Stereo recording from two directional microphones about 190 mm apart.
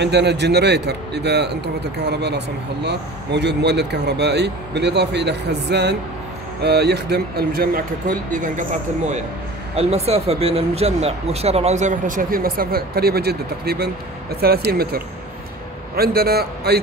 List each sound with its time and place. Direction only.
0.0 s speech: 60° right (ahead or behind); by 8.6 s 40° right (ahead or behind)
9.8 s speech: 35° right (ahead or behind); by 16.8 s 55° right (ahead or behind)